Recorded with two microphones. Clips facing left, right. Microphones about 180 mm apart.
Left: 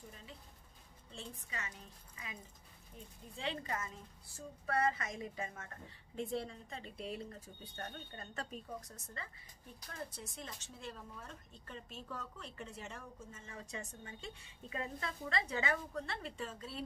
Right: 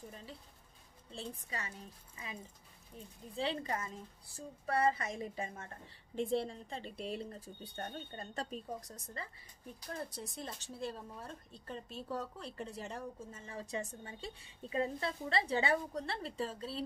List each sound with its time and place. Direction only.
1.1 s speech: 35° right (ahead or behind)
3.3 s speech: 35° right (ahead or behind)